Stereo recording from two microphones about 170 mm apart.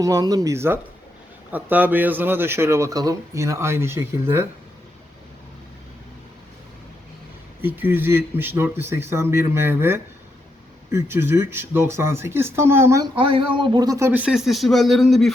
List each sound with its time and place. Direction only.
0.0 s speech: 20° right (ahead or behind)
7.6 s speech: 10° right (ahead or behind)
13.1 s speech: 30° right (ahead or behind); by 15.3 s centre (ahead or behind)